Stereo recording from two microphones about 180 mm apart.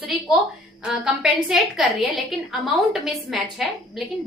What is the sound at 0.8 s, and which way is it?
A woman's voice, 5° right (ahead or behind).